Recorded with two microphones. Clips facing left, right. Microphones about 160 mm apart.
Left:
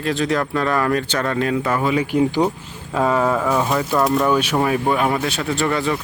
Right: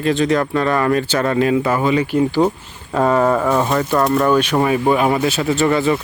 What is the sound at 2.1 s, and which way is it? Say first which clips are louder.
Speech: right 2 dB; 15° left (ahead or behind).